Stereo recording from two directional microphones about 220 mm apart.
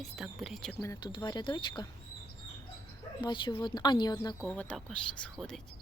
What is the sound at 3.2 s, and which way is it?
A woman's voice, 20° left (ahead or behind).